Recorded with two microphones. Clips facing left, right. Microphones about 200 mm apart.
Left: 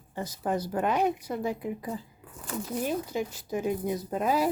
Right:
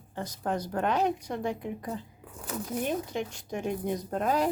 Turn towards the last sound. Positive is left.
turn(degrees=5)  # may be behind; listen again after turning